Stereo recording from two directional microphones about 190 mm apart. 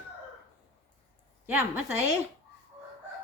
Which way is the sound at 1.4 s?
10° right (ahead or behind).